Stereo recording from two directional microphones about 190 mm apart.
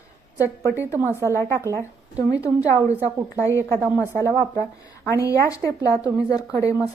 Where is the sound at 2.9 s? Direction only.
10° right (ahead or behind).